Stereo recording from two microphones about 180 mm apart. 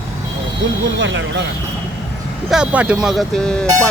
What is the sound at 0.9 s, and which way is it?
Speech, 90° right.